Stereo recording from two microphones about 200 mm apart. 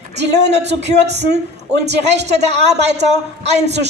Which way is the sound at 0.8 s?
35° right (ahead or behind).